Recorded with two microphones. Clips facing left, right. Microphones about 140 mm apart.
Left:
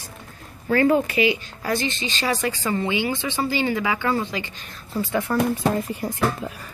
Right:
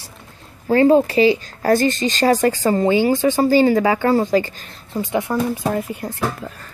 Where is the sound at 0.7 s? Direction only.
30° right (ahead or behind).